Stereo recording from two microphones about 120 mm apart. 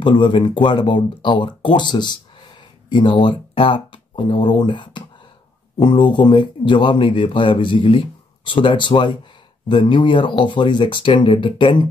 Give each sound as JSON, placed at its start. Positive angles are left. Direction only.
{"t": 0.0, "sound": "speech", "side_deg": 40}